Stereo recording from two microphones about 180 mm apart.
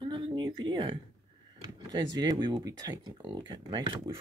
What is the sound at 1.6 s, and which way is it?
Speech, 25° right (ahead or behind).